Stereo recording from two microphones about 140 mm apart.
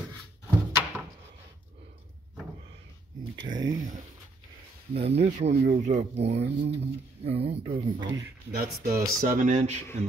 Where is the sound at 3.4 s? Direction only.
25° right (ahead or behind).